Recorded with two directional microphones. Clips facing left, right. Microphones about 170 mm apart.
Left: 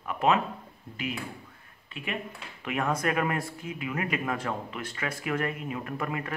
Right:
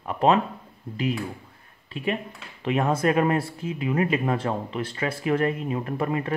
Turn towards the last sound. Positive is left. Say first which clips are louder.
# right 7 dB
turn(degrees=-30)  # may be behind; listen again after turning